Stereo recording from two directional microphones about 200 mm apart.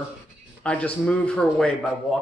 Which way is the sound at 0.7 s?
5° left (ahead or behind).